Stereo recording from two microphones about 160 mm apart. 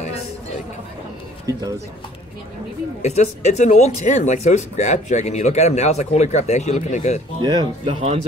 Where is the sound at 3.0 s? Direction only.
45° left (ahead or behind).